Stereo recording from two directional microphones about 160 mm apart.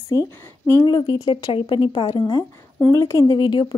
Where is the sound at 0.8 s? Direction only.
30° left (ahead or behind).